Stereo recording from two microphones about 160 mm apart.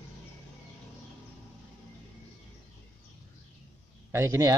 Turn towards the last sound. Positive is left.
turn(degrees=-20)  # may be behind; listen again after turning